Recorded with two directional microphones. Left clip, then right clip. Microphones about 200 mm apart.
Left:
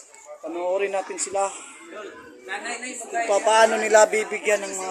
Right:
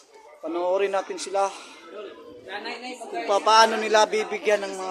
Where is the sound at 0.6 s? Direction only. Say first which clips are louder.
Right 1 dB; 15° right (ahead or behind).